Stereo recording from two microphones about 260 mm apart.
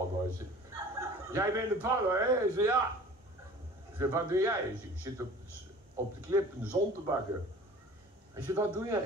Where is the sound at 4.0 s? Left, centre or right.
Centre.